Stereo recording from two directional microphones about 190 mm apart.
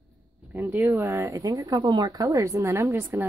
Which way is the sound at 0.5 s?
10° right (ahead or behind).